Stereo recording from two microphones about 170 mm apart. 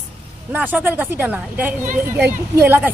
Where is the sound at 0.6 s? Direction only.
10° right (ahead or behind).